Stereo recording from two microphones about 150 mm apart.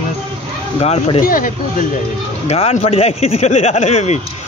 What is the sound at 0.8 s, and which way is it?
Speech, 45° left (ahead or behind).